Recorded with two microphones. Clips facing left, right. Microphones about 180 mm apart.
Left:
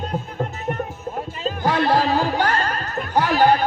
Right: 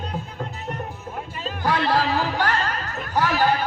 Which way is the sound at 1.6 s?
20° left (ahead or behind).